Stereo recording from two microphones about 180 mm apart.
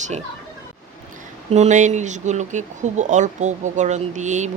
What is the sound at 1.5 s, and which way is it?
Speech, 40° right (ahead or behind).